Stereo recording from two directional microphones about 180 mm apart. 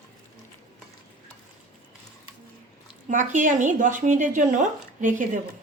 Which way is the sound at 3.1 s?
45° right (ahead or behind).